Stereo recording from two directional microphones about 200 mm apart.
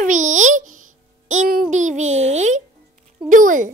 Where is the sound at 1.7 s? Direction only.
35° right (ahead or behind).